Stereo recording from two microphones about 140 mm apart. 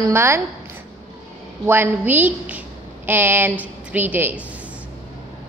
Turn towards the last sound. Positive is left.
turn(degrees=-10)  # may be behind; listen again after turning